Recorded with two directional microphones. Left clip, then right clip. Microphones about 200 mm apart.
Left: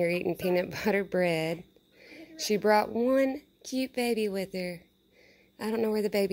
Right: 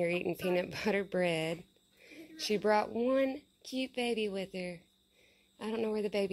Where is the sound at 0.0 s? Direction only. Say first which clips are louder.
Left 5 dB; 10° left (ahead or behind).